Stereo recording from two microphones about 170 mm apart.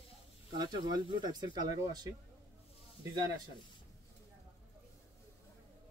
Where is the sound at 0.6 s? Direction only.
25° right (ahead or behind).